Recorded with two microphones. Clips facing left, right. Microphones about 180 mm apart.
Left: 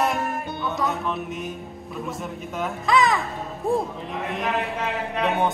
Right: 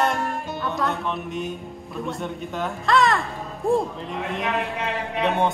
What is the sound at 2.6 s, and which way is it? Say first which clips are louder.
A man's voice: even; centre (ahead or behind).